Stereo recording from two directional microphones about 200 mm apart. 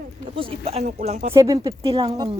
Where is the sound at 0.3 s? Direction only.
30° right (ahead or behind).